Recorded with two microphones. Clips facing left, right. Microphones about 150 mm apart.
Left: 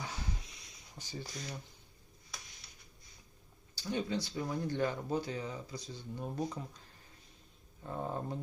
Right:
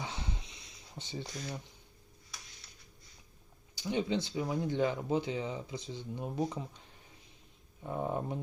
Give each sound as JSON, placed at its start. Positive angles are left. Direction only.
{"t": 0.0, "sound": "a sound", "side_deg": -25}
{"t": 0.9, "sound": "speech", "side_deg": -20}
{"t": 3.8, "sound": "speech", "side_deg": -20}
{"t": 7.9, "sound": "speech", "side_deg": -15}